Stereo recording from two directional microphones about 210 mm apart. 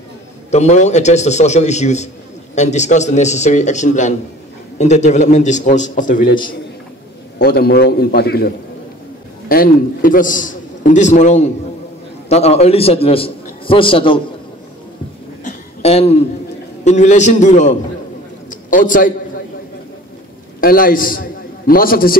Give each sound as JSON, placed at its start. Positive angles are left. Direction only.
{"t": 0.5, "sound": "a man's voice", "side_deg": 35}
{"t": 15.4, "sound": "a sound", "side_deg": 30}
{"t": 16.8, "sound": "a man's voice", "side_deg": 35}
{"t": 20.6, "sound": "a man's voice", "side_deg": 40}